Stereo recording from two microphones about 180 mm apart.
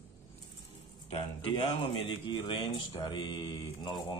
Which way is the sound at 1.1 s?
30° left (ahead or behind).